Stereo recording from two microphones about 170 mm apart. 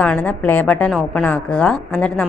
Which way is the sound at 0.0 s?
10° left (ahead or behind).